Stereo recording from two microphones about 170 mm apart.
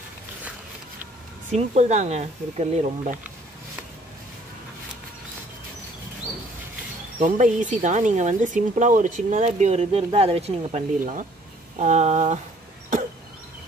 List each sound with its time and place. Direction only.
1.5 s speech: 40° right (ahead or behind)
7.2 s speech: 50° right (ahead or behind)